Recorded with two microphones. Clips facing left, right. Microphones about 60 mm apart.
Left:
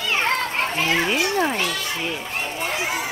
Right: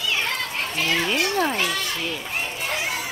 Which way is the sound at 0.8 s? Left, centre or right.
Centre.